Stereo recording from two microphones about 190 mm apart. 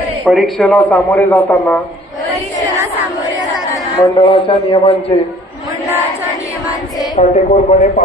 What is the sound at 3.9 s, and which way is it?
A man's voice, 25° left (ahead or behind).